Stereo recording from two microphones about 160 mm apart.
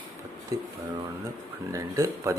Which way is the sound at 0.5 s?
20° right (ahead or behind).